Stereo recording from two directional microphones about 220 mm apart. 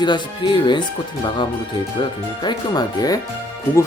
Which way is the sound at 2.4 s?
20° left (ahead or behind).